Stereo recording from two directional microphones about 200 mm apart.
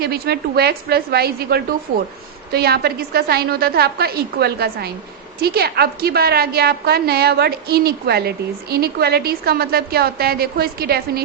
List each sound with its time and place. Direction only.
0.0 s a woman's voice: 50° right (ahead or behind)